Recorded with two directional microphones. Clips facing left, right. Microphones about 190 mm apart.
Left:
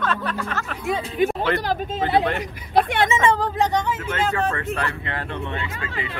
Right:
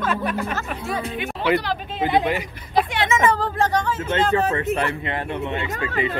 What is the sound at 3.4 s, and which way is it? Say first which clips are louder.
Speech: even; 20° left (ahead or behind).